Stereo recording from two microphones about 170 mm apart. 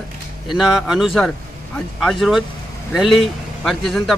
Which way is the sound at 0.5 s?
Centre (ahead or behind).